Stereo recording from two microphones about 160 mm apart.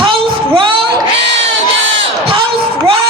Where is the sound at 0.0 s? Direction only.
30° right (ahead or behind).